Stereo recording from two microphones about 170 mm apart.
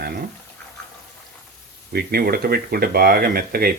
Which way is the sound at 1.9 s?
65° right (ahead or behind).